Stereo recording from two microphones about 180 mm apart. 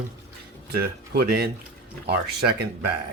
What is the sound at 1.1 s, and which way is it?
Speech, 60° right (ahead or behind).